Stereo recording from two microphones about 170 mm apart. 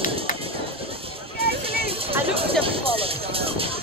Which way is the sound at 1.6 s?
35° right (ahead or behind).